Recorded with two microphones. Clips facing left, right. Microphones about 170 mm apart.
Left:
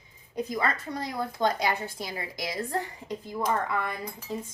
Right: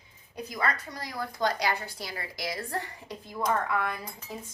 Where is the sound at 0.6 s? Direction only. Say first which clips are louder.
Left 2 dB; 25° left (ahead or behind).